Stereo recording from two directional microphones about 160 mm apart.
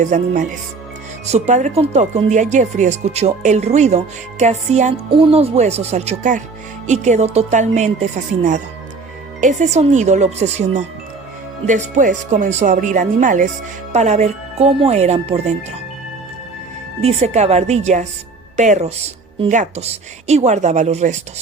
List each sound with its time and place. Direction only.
0.0 s speech: 50° right (ahead or behind)
17.0 s speech: 40° right (ahead or behind)